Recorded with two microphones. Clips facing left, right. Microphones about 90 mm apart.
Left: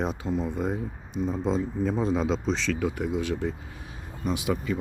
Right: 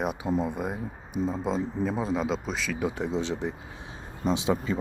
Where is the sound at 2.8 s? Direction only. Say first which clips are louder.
Left 1 dB; 20° right (ahead or behind).